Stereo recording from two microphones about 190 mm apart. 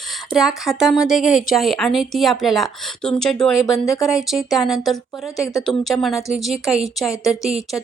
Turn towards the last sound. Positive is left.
turn(degrees=0)  # may be behind; listen again after turning